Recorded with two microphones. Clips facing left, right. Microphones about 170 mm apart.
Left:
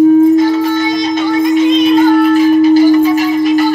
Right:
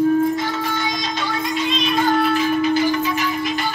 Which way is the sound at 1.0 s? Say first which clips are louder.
Left 12 dB; 15° left (ahead or behind).